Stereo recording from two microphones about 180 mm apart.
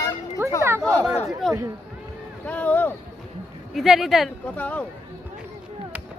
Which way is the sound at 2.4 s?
10° left (ahead or behind).